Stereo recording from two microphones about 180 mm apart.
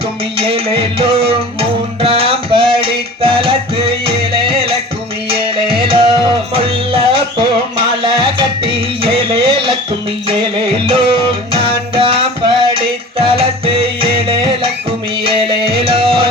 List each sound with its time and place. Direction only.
0.3 s music: 30° right (ahead or behind)
2.0 s tabla: 30° right (ahead or behind)
2.7 s music: 30° right (ahead or behind)